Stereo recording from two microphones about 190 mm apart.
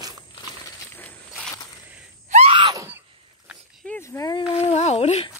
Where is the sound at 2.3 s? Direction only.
30° right (ahead or behind).